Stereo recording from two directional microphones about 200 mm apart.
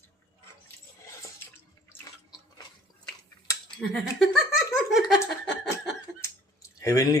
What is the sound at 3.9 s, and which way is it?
Speech, 5° left (ahead or behind).